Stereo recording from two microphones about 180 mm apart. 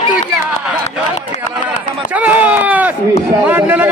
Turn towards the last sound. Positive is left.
turn(degrees=-10)  # may be behind; listen again after turning